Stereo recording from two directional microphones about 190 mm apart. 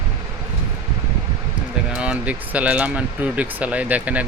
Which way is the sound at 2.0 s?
5° right (ahead or behind).